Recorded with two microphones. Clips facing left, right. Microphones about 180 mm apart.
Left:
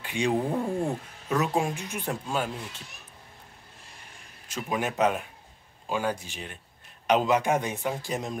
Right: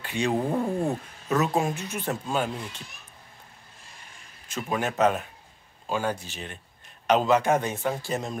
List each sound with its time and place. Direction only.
0.0 s speech: 15° left (ahead or behind)
0.3 s a man's voice: 5° right (ahead or behind)
1.4 s speech: 10° left (ahead or behind)
4.5 s speech: 10° left (ahead or behind)